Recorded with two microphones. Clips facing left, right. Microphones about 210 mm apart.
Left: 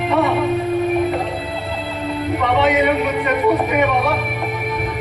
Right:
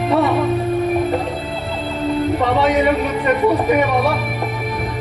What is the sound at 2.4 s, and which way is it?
Music, 35° right (ahead or behind).